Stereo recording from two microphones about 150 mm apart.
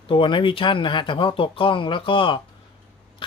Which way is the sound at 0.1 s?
35° left (ahead or behind).